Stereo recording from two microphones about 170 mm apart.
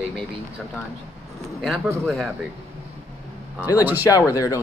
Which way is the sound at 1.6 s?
Centre (ahead or behind).